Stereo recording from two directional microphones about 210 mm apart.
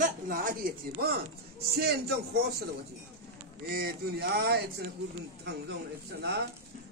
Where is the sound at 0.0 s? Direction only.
40° right (ahead or behind).